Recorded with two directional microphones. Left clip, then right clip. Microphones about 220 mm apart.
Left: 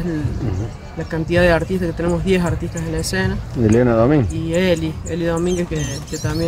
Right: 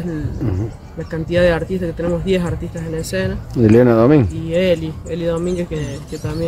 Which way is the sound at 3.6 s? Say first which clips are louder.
Right 3 dB; 50° right (ahead or behind).